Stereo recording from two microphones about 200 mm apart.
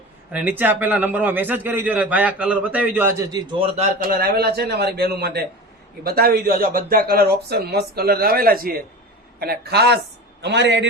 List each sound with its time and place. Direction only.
0.3 s a man's voice: 10° right (ahead or behind); by 3.9 s 30° right (ahead or behind)
4.1 s a man's voice: 50° right (ahead or behind)